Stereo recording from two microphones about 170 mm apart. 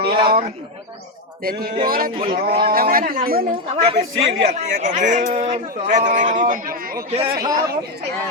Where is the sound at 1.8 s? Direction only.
60° right (ahead or behind).